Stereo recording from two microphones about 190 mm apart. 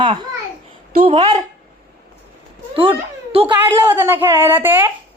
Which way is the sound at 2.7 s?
25° right (ahead or behind).